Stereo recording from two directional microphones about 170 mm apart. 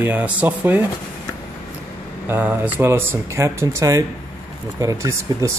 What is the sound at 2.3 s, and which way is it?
Speech, 10° right (ahead or behind).